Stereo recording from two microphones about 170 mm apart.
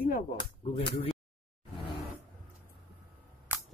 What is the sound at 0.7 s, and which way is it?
Speech, 35° left (ahead or behind).